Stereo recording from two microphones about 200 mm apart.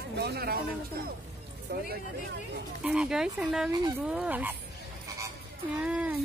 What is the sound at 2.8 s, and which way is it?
Speech, 5° right (ahead or behind).